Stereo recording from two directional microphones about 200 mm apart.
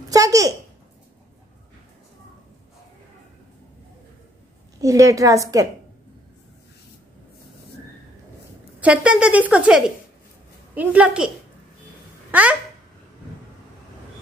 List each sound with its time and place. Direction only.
0.1 s a woman's voice: 15° right (ahead or behind)
4.7 s a woman's voice: 15° right (ahead or behind)
8.7 s a woman's voice: 5° right (ahead or behind)